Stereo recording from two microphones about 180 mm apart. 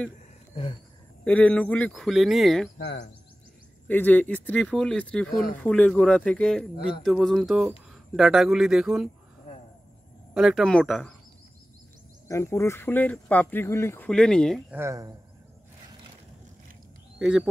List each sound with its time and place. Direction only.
1.2 s speech: 5° left (ahead or behind)
2.8 s speech: 70° left (ahead or behind)
3.8 s speech: 10° left (ahead or behind)
10.3 s speech: centre (ahead or behind)
12.3 s speech: 15° left (ahead or behind)
14.7 s speech: 15° right (ahead or behind)
17.2 s speech: 5° right (ahead or behind)